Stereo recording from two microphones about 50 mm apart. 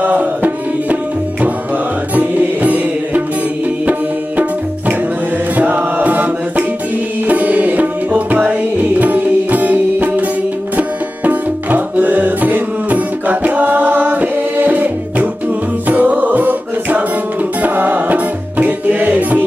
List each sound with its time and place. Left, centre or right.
0.0 s music: right
2.1 s music: right
5.6 s chant: right
7.2 s music: right